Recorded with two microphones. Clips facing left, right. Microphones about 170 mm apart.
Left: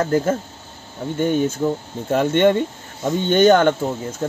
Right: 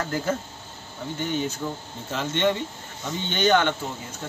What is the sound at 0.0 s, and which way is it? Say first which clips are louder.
Speech: left 8 dB; 45° left (ahead or behind).